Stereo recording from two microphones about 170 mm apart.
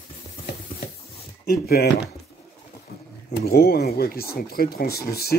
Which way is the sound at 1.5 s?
65° left (ahead or behind).